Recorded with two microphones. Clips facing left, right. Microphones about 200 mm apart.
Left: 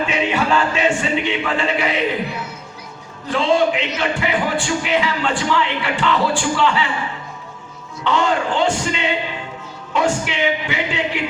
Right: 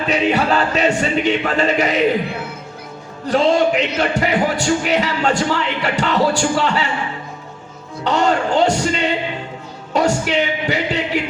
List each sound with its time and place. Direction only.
0.1 s a man's voice: 35° right (ahead or behind)
3.2 s a man's voice: 40° right (ahead or behind)
8.0 s a man's voice: 40° right (ahead or behind)